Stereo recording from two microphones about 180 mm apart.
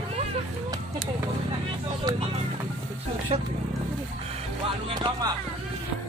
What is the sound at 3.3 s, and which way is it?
Speech, 30° right (ahead or behind).